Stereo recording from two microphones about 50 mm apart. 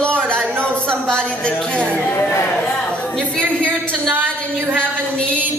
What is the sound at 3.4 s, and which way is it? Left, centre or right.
Speech, centre.